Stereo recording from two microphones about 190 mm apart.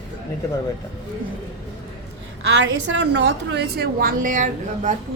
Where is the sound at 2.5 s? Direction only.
75° right (ahead or behind).